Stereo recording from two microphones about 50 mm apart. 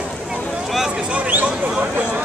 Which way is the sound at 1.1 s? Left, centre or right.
Right.